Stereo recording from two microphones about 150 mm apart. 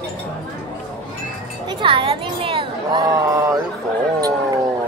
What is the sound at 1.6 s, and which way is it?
Chink, 35° right (ahead or behind).